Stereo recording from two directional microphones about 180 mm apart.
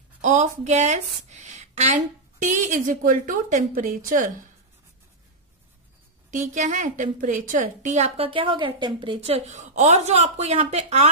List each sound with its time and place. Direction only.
0.2 s a woman's voice: 40° right (ahead or behind)
6.3 s a woman's voice: 40° right (ahead or behind)